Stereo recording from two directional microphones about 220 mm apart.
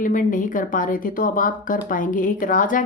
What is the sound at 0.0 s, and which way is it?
A woman's voice, 35° left (ahead or behind).